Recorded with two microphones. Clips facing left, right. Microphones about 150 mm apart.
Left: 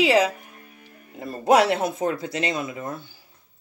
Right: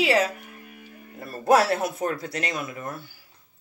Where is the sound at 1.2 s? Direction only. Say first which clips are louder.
Left 2 dB; 20° left (ahead or behind).